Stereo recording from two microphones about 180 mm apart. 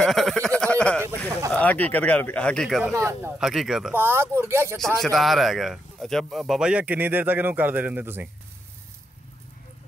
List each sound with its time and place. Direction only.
0.0 s a sound: centre (ahead or behind)
1.5 s speech: 10° left (ahead or behind)
2.9 s speech: 15° right (ahead or behind)
3.3 s speech: centre (ahead or behind)
3.9 s speech: 15° right (ahead or behind)
4.7 s speech: centre (ahead or behind)